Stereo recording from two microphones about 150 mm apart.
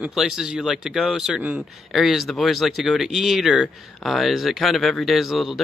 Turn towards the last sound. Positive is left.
turn(degrees=0)  # may be behind; listen again after turning